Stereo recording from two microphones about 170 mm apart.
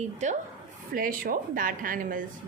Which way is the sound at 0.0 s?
45° right (ahead or behind).